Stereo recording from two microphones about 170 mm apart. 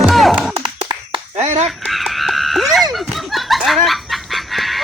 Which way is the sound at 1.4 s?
40° right (ahead or behind).